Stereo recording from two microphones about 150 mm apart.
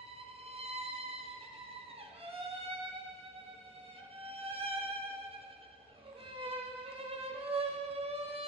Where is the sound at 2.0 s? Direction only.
40° right (ahead or behind).